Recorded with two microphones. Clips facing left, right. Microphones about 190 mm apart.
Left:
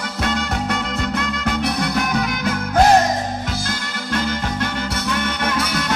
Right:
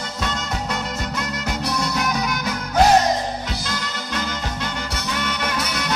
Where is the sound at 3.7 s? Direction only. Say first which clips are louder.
Left 3 dB; 50° left (ahead or behind).